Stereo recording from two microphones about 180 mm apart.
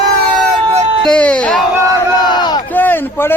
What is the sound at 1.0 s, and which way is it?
Speech, 5° left (ahead or behind).